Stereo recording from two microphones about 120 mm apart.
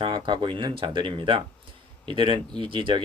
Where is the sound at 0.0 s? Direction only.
45° right (ahead or behind).